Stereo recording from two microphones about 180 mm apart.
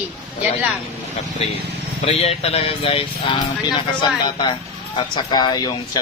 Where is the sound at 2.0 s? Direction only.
35° left (ahead or behind).